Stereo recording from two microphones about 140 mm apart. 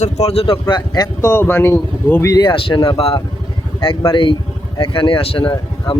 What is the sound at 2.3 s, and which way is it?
Speech, 35° left (ahead or behind).